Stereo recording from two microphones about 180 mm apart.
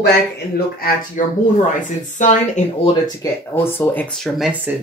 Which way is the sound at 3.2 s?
20° left (ahead or behind).